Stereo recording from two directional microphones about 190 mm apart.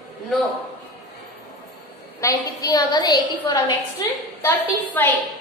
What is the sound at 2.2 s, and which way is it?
A woman's voice, 15° left (ahead or behind).